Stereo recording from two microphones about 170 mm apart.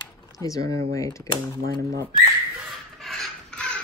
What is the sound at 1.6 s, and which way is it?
Speech, 60° right (ahead or behind).